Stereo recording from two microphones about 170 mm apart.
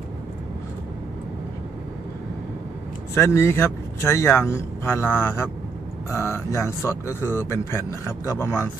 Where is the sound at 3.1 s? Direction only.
15° left (ahead or behind).